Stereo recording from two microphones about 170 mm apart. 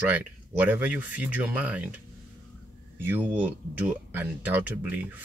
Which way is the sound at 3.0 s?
10° right (ahead or behind).